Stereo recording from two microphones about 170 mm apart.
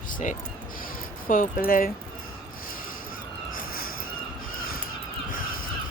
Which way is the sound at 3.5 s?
60° left (ahead or behind).